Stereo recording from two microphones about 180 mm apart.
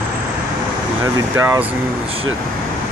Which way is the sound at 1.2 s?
15° right (ahead or behind).